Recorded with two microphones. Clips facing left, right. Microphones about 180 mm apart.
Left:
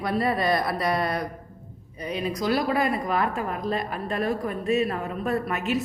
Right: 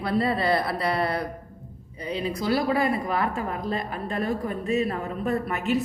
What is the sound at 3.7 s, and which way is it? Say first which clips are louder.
A woman's voice: left 1 dB; 25° right (ahead or behind).